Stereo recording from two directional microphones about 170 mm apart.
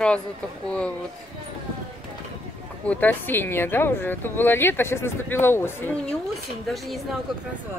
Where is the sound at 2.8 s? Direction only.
10° left (ahead or behind).